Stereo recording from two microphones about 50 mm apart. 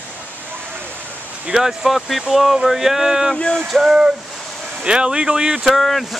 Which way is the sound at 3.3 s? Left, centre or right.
Centre.